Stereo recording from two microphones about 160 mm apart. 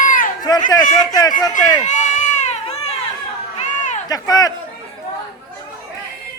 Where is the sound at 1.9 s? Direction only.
50° left (ahead or behind).